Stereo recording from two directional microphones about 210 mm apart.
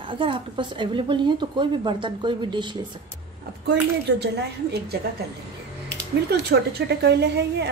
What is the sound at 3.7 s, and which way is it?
A woman's voice, 55° right (ahead or behind).